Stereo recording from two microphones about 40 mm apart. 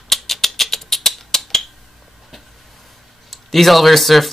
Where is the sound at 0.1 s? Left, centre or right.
Centre.